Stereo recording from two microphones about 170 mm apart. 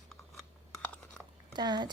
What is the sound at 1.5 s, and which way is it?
Speech, 25° right (ahead or behind).